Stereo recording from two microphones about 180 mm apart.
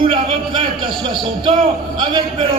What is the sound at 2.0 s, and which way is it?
Speech, 25° right (ahead or behind).